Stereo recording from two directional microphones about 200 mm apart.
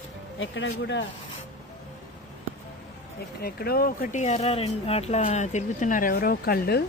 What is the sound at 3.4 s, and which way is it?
Speech, 50° left (ahead or behind).